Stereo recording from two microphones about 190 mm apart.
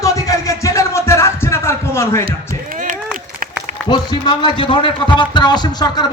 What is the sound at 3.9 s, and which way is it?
A man's voice, 20° left (ahead or behind).